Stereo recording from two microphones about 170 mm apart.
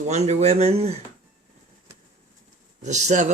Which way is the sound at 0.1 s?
40° right (ahead or behind).